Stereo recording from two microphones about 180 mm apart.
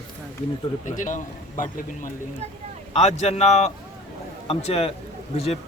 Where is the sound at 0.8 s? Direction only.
45° left (ahead or behind).